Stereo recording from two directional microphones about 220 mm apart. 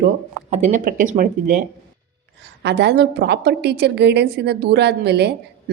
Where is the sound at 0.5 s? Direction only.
35° right (ahead or behind).